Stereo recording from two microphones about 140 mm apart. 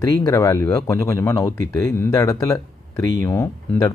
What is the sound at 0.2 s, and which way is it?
Speech, 25° left (ahead or behind).